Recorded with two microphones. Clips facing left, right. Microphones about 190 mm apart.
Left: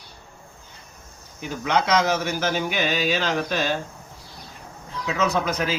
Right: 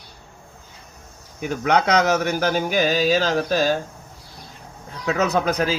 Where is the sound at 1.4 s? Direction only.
55° right (ahead or behind).